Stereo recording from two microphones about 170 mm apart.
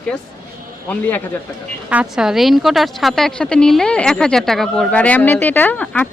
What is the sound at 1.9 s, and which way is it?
A woman's voice, 5° right (ahead or behind).